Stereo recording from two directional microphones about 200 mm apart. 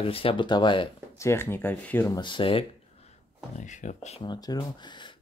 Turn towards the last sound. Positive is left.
turn(degrees=25)  # may be behind; listen again after turning